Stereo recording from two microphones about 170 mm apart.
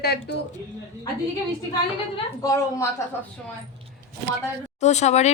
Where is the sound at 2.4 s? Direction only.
20° left (ahead or behind).